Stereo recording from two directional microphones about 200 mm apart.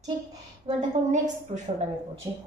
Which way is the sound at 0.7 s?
30° right (ahead or behind).